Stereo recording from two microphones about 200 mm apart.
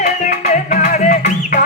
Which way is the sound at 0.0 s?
45° left (ahead or behind).